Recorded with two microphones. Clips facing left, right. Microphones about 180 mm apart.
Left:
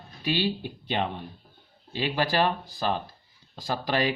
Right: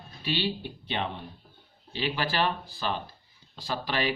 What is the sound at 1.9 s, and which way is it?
Speech, 45° left (ahead or behind).